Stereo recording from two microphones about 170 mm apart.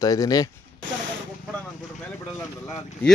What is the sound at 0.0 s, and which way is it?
Speech, 20° left (ahead or behind).